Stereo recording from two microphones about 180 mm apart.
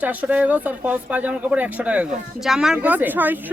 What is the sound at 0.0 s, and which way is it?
Speech, 10° right (ahead or behind).